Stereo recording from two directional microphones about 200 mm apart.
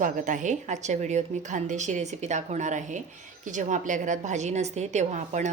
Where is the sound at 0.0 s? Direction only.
40° right (ahead or behind).